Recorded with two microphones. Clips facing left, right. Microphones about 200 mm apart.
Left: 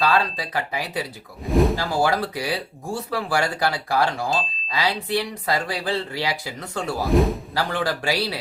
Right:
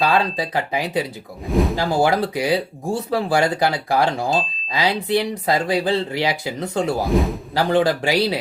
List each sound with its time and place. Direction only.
0.0 s speech: 20° right (ahead or behind)
1.5 s a man's voice: centre (ahead or behind)
1.7 s speech: 20° right (ahead or behind)
7.1 s a man's voice: centre (ahead or behind)
7.5 s speech: 20° right (ahead or behind)